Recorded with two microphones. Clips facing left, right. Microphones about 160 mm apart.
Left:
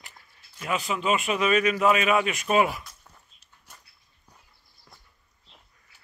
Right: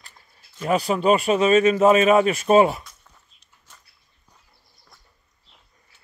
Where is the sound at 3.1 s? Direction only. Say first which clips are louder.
Left 1 dB; 10° left (ahead or behind).